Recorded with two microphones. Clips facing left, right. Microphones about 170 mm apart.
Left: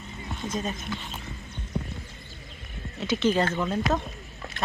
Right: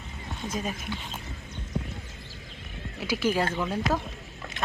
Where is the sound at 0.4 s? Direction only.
10° right (ahead or behind).